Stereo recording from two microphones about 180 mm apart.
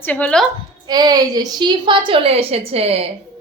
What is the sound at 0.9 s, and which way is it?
A woman's voice, 20° right (ahead or behind).